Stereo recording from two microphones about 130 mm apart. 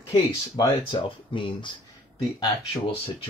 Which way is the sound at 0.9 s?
40° left (ahead or behind).